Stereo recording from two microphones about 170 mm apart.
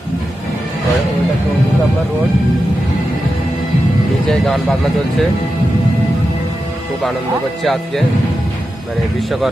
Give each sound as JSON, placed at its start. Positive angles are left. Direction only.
{"t": 4.3, "sound": "speech", "side_deg": 0}
{"t": 7.6, "sound": "speech", "side_deg": 0}